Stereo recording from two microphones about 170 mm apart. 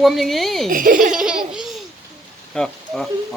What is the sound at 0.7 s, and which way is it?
Speech, 55° right (ahead or behind).